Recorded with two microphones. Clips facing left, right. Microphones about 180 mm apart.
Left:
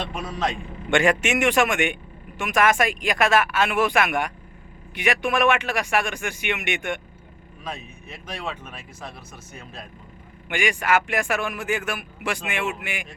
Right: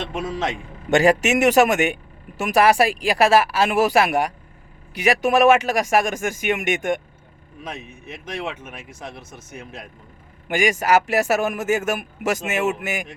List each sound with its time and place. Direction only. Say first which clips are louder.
0.0 s speech: right 2 dB; 25° right (ahead or behind)
0.9 s a man's voice: right 4 dB; 35° right (ahead or behind)
7.6 s speech: right 1 dB; 20° right (ahead or behind)
10.5 s a man's voice: right 4 dB; 40° right (ahead or behind)